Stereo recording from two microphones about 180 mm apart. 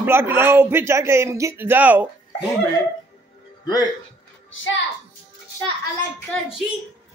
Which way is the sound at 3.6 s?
20° left (ahead or behind).